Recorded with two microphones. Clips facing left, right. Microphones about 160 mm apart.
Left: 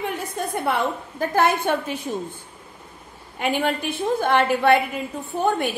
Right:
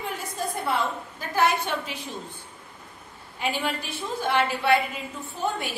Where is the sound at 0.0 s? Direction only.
60° left (ahead or behind).